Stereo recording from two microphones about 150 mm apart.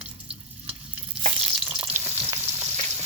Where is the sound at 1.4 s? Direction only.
5° right (ahead or behind).